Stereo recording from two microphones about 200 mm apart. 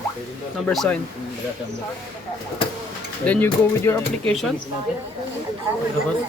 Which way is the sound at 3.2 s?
10° left (ahead or behind).